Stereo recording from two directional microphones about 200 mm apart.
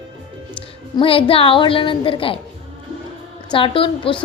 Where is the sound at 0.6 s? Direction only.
25° left (ahead or behind).